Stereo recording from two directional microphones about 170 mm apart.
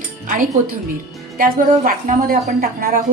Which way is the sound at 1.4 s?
55° right (ahead or behind).